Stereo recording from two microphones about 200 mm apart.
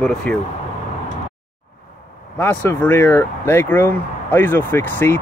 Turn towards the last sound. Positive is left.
turn(degrees=10)  # may be behind; listen again after turning